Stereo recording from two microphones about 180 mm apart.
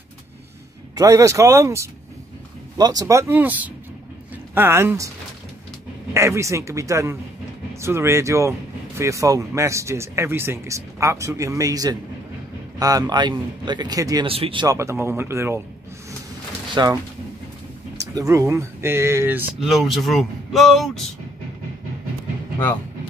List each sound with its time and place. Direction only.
0.9 s speech: 20° right (ahead or behind)
6.1 s a man's voice: 15° right (ahead or behind)
16.7 s a man's voice: 20° right (ahead or behind)
18.1 s speech: 15° right (ahead or behind)
19.6 s speech: centre (ahead or behind)